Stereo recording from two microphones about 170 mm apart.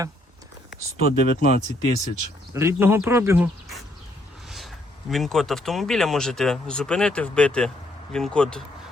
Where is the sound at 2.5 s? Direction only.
15° right (ahead or behind).